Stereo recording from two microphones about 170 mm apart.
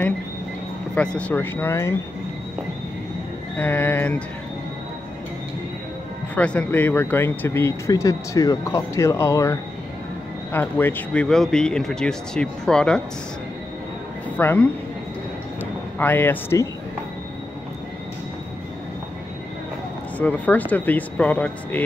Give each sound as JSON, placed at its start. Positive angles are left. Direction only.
{"t": 0.9, "sound": "speech", "side_deg": 5}
{"t": 3.5, "sound": "speech", "side_deg": 10}
{"t": 6.3, "sound": "speech", "side_deg": 10}
{"t": 14.3, "sound": "speech", "side_deg": 10}
{"t": 16.0, "sound": "speech", "side_deg": 10}
{"t": 20.2, "sound": "speech", "side_deg": 10}